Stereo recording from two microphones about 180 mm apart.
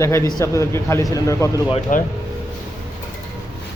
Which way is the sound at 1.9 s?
45° left (ahead or behind).